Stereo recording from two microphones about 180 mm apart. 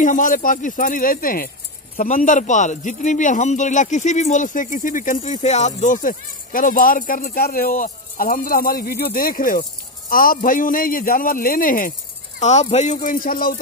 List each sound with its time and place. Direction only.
0.0 s a man's voice: 45° left (ahead or behind)
12.4 s a man's voice: 40° left (ahead or behind)